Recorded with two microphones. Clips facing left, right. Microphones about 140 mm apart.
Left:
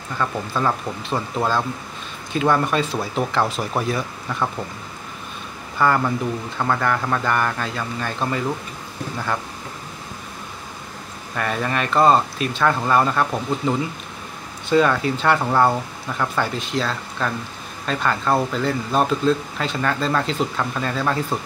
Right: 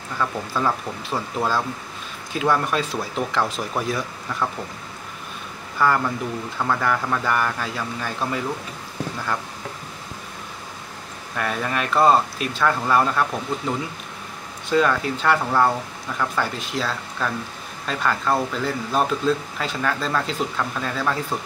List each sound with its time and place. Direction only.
0.2 s speech: 5° right (ahead or behind)
5.8 s speech: centre (ahead or behind)
11.3 s speech: centre (ahead or behind)